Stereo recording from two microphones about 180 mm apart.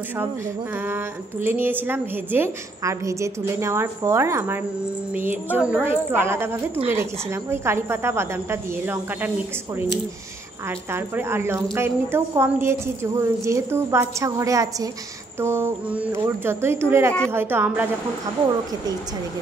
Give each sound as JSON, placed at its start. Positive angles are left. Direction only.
{"t": 0.8, "sound": "a woman's voice", "side_deg": -10}
{"t": 10.9, "sound": "a woman's voice", "side_deg": -15}